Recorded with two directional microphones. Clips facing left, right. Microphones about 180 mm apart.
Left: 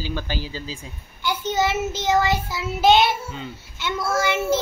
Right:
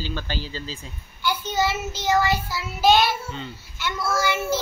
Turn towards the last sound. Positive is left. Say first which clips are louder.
# left 2 dB
turn(degrees=20)  # may be behind; listen again after turning